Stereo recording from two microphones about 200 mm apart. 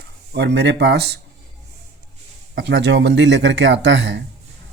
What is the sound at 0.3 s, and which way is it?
Speech, 60° right (ahead or behind).